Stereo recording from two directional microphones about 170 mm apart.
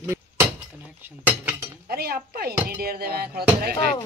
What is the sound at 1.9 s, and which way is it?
Music, 65° right (ahead or behind).